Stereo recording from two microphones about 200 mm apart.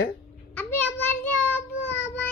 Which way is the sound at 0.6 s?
10° left (ahead or behind).